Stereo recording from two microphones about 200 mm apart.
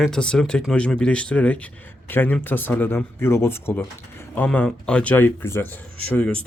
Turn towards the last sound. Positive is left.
turn(degrees=5)  # may be behind; listen again after turning